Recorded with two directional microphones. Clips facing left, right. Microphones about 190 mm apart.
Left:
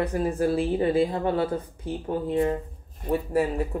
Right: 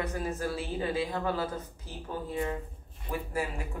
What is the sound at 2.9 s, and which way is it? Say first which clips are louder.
Speech: left 10 dB; 45° left (ahead or behind).